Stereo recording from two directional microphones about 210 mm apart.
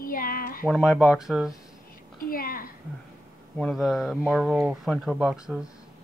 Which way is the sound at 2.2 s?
45° left (ahead or behind).